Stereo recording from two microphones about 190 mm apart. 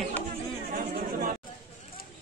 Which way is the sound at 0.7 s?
50° right (ahead or behind).